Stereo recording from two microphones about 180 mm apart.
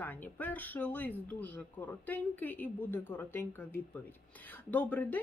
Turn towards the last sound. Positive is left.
turn(degrees=10)  # may be behind; listen again after turning